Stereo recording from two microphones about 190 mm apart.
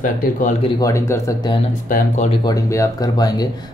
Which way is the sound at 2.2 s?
20° left (ahead or behind).